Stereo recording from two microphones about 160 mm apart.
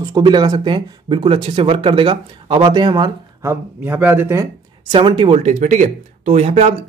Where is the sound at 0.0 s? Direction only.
25° right (ahead or behind).